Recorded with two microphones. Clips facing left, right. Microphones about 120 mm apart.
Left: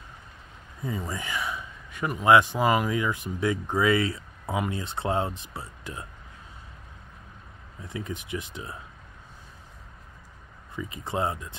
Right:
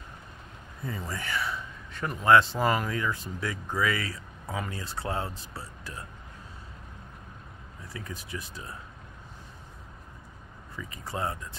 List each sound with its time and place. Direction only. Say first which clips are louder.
0.8 s a man's voice: left 3 dB; 15° left (ahead or behind)
7.8 s speech: left 6 dB; 20° left (ahead or behind)
10.8 s speech: left 5 dB; 20° left (ahead or behind)